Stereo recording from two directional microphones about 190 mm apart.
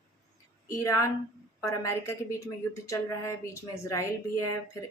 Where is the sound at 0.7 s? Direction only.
15° left (ahead or behind).